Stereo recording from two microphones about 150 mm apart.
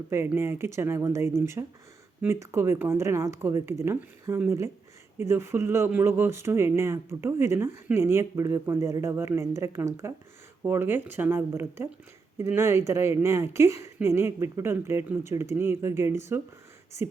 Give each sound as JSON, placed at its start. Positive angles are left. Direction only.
{"t": 0.1, "sound": "speech", "side_deg": -15}